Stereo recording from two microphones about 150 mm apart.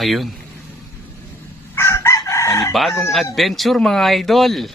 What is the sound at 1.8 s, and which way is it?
Chicken, 15° left (ahead or behind).